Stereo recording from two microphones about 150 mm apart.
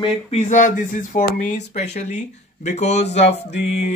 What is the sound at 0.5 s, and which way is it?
A child's voice, 55° left (ahead or behind).